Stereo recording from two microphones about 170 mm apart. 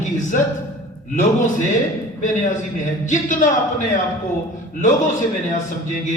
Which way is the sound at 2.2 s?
45° left (ahead or behind).